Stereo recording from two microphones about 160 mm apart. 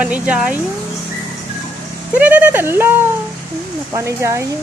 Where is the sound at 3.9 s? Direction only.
20° right (ahead or behind).